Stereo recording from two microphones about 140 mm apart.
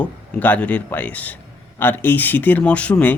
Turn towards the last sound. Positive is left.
turn(degrees=10)  # may be behind; listen again after turning